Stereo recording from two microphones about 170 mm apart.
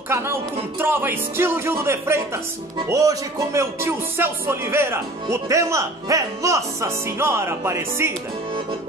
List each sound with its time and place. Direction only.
0.1 s music: 15° right (ahead or behind)